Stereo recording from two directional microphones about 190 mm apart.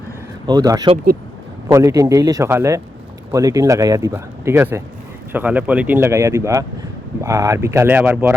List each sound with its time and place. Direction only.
0.4 s a man's voice: 20° right (ahead or behind)